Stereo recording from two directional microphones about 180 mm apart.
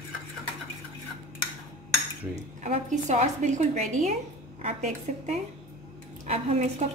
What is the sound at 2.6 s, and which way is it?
A woman's voice, 40° right (ahead or behind).